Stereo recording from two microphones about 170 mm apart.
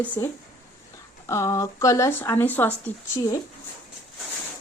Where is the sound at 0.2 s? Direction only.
15° left (ahead or behind).